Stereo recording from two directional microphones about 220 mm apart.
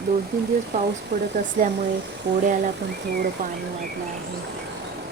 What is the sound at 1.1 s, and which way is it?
Speech, 50° right (ahead or behind).